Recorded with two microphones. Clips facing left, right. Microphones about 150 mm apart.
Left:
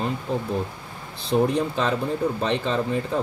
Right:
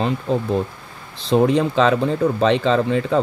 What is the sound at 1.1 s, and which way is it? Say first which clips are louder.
Speech: right 5 dB; 90° right.